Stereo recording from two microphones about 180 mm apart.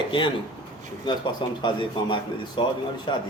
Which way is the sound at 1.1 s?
25° left (ahead or behind).